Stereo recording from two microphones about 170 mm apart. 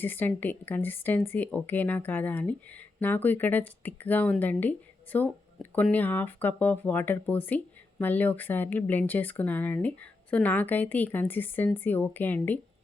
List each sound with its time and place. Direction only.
0.0 s speech: 10° left (ahead or behind)